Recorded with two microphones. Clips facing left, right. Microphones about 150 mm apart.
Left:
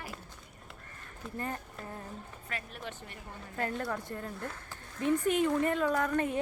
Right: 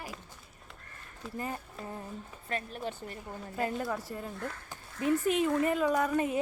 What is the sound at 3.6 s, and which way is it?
A woman's voice, 10° right (ahead or behind).